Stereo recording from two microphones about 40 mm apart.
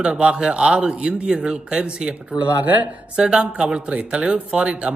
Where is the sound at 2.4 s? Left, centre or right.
Right.